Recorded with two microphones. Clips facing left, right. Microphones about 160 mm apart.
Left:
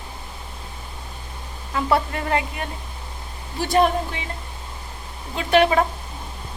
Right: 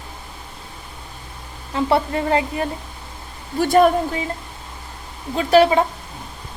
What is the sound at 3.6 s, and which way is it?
Speech, 50° right (ahead or behind).